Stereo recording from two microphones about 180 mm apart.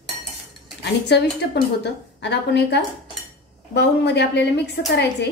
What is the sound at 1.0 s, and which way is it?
A woman's voice, 70° left (ahead or behind).